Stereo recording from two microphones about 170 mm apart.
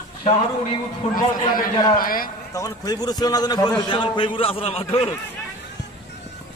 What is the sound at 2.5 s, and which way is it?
A man's voice, 20° left (ahead or behind).